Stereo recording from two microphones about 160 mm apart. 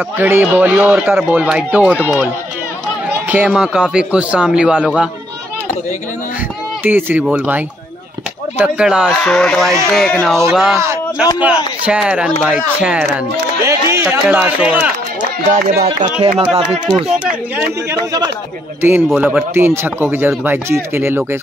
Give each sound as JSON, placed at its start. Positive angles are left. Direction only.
{"t": 0.2, "sound": "speech", "side_deg": -10}
{"t": 3.3, "sound": "a man's voice", "side_deg": -10}
{"t": 6.8, "sound": "a man's voice", "side_deg": -15}
{"t": 13.7, "sound": "speech", "side_deg": -15}
{"t": 15.5, "sound": "speech", "side_deg": -65}
{"t": 16.0, "sound": "speech", "side_deg": -40}
{"t": 17.2, "sound": "speech", "side_deg": -5}
{"t": 18.8, "sound": "speech", "side_deg": -15}